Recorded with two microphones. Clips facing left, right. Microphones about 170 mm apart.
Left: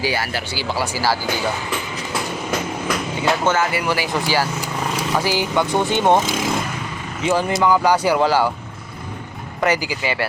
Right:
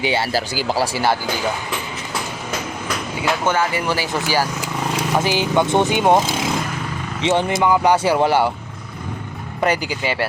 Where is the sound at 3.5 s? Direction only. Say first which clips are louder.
Even; 15° right (ahead or behind).